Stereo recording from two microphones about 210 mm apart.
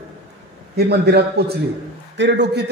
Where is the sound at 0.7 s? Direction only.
50° right (ahead or behind).